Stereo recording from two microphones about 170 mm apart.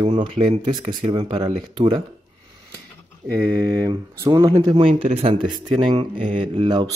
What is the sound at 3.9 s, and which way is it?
Speech, 20° right (ahead or behind).